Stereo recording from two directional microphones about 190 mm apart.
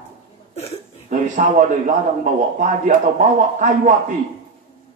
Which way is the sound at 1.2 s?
40° right (ahead or behind).